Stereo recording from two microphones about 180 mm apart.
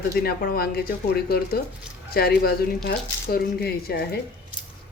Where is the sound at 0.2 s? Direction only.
60° left (ahead or behind).